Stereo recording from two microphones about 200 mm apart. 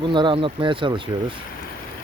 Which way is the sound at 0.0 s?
25° right (ahead or behind).